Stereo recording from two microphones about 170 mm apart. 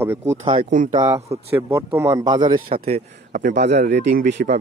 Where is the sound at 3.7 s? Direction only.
85° right.